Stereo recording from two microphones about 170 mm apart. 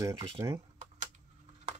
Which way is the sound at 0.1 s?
30° right (ahead or behind).